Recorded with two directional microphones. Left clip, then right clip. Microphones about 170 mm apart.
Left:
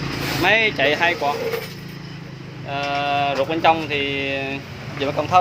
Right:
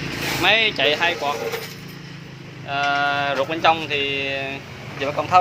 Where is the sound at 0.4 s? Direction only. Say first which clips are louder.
Even; 20° left (ahead or behind).